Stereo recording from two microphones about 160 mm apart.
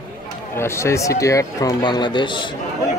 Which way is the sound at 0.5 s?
15° left (ahead or behind).